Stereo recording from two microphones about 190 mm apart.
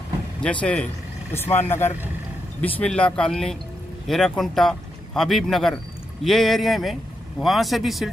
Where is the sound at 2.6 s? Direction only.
10° left (ahead or behind).